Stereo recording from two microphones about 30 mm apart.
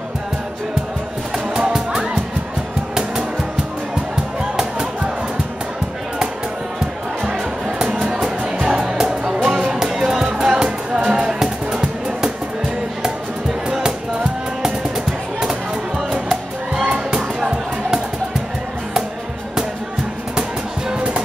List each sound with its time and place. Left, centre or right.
1.5 s music: right
2.9 s music: right
7.8 s music: right
9.7 s music: centre
16.1 s music: centre
16.8 s music: right
20.9 s music: right